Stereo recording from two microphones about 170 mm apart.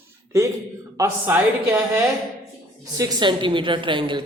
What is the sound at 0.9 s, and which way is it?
A man's voice, 15° right (ahead or behind).